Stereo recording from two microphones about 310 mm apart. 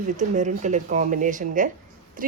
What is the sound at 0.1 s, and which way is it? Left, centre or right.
A woman's voice, right.